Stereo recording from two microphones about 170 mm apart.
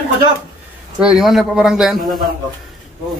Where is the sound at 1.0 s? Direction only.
5° right (ahead or behind).